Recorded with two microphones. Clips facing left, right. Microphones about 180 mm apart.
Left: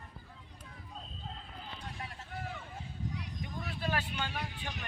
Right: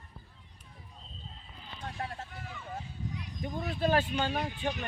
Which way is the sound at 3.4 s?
40° right (ahead or behind).